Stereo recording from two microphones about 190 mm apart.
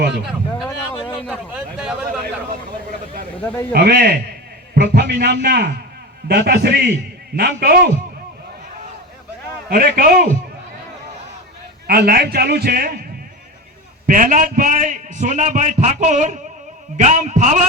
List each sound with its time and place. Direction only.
0.9 s a sound: 25° left (ahead or behind)
1.5 s a sound: 5° right (ahead or behind)
3.4 s a man's voice: 10° left (ahead or behind)
3.7 s a man's voice: 55° right (ahead or behind)
9.6 s a man's voice: 50° right (ahead or behind)
11.9 s a man's voice: 55° right (ahead or behind)
14.1 s a man's voice: 45° right (ahead or behind)